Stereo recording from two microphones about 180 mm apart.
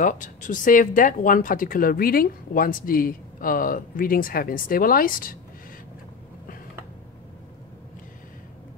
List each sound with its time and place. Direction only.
0.0 s speech: 45° left (ahead or behind)